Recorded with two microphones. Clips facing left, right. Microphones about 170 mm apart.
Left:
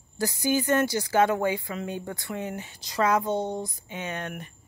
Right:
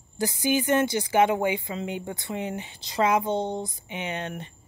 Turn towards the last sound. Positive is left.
turn(degrees=-25)  # may be behind; listen again after turning